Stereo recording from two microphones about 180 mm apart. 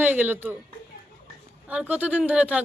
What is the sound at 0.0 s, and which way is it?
Speech, 10° right (ahead or behind).